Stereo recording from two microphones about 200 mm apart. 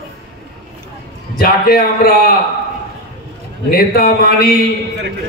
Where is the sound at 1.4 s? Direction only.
45° left (ahead or behind).